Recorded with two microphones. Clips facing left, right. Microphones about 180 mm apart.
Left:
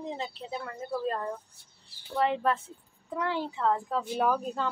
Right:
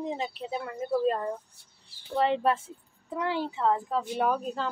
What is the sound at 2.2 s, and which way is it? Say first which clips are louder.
Speech: right 2 dB; 25° right (ahead or behind).